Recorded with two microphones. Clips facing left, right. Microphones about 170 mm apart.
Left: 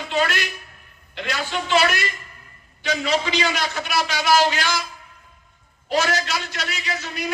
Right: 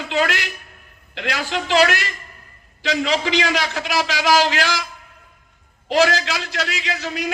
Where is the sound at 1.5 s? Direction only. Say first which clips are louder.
Right 3 dB; 90° right.